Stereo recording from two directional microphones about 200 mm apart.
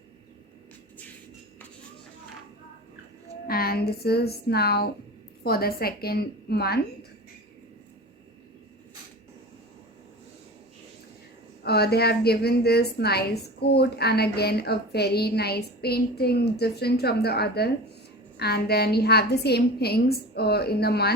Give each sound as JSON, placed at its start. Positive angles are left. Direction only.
{"t": 3.4, "sound": "a woman's voice", "side_deg": 50}
{"t": 11.6, "sound": "a woman's voice", "side_deg": 55}